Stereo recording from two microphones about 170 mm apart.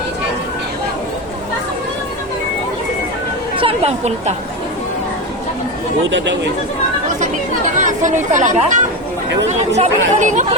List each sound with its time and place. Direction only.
3.6 s a woman's voice: 35° right (ahead or behind)
6.0 s speech: 90° right
7.8 s speech: 45° right (ahead or behind)